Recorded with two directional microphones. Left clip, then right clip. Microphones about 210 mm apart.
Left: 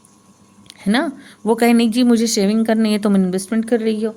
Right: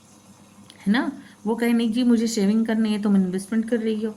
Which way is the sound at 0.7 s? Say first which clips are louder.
Left 5 dB; 50° left (ahead or behind).